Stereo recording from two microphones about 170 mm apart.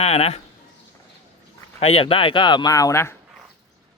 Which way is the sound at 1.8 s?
35° left (ahead or behind).